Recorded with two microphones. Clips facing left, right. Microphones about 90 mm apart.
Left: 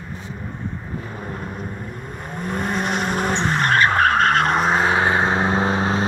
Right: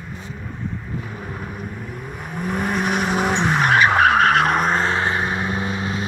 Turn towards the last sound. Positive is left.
turn(degrees=30)  # may be behind; listen again after turning